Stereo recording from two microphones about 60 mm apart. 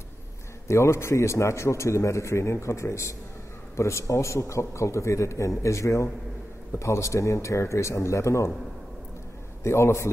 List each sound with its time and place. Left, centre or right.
0.7 s a man's voice: left
9.6 s a man's voice: left